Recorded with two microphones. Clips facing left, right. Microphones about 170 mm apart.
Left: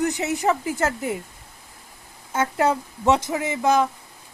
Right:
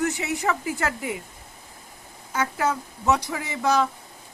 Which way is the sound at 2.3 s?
30° left (ahead or behind).